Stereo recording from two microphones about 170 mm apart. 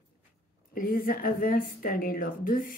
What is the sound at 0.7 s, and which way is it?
A woman's voice, 55° left (ahead or behind).